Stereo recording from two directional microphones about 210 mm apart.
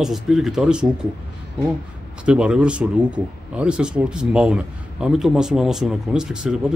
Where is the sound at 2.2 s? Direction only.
5° right (ahead or behind).